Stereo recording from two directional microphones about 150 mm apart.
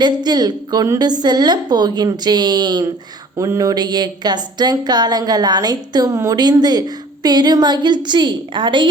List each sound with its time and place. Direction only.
0.0 s speech: 30° right (ahead or behind)